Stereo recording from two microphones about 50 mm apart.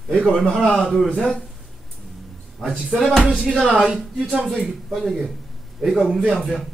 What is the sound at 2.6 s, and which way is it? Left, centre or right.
Speech, centre.